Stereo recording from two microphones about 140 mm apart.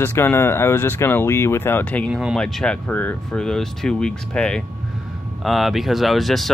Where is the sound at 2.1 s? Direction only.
5° right (ahead or behind).